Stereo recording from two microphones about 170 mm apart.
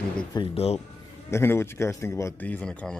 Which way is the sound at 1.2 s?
15° left (ahead or behind).